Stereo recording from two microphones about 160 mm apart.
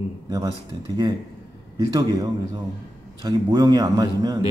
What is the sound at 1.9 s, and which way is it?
Speech, 25° right (ahead or behind).